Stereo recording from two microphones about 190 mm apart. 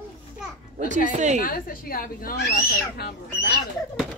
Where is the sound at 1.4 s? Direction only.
50° left (ahead or behind).